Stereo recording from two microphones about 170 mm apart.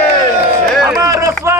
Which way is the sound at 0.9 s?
20° right (ahead or behind).